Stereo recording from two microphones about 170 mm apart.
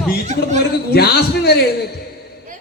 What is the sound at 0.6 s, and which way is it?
Speech, 70° left (ahead or behind).